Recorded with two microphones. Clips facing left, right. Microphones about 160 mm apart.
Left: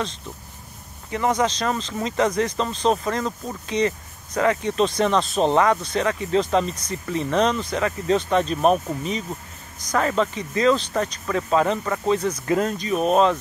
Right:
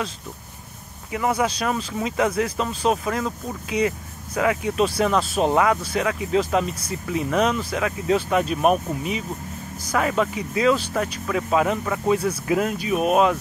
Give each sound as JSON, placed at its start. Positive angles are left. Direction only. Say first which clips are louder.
{"t": 1.1, "sound": "speech", "louder": "left 1 dB", "side_deg": -5}